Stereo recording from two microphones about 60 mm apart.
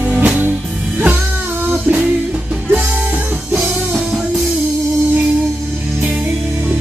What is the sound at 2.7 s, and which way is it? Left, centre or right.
Music, right.